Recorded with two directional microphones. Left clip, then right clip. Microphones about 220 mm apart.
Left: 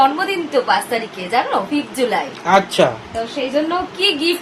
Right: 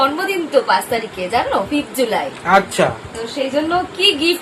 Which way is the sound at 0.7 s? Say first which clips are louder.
Right 1 dB; 15° left (ahead or behind).